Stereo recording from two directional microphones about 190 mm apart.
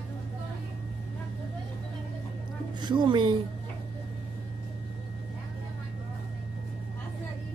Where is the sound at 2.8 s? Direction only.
25° right (ahead or behind).